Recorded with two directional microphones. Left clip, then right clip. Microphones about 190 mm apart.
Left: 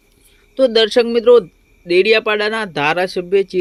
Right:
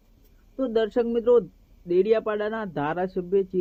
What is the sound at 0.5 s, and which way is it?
Speech, 25° left (ahead or behind).